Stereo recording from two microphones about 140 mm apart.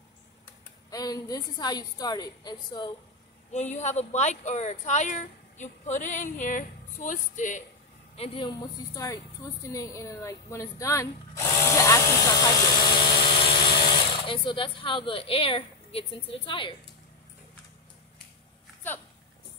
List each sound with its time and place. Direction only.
0.8 s a woman's voice: 25° left (ahead or behind)
3.5 s speech: 55° left (ahead or behind)
8.2 s a woman's voice: 35° left (ahead or behind)